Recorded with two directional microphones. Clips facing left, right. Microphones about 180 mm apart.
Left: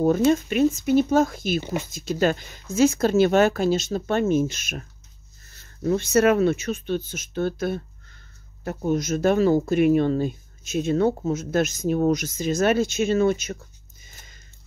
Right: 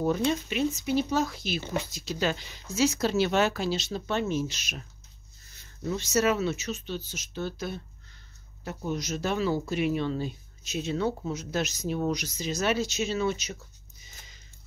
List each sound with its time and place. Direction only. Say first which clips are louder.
0.0 s speech: left 7 dB; 50° left (ahead or behind)
5.9 s speech: left 7 dB; 55° left (ahead or behind)
14.0 s a sound: left 2 dB; 50° left (ahead or behind)